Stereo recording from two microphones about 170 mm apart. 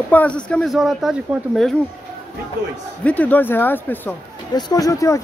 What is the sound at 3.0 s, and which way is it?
Speech, 10° left (ahead or behind).